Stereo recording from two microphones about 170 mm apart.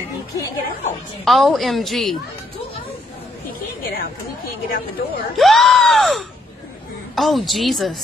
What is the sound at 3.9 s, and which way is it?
Speech, 60° left (ahead or behind).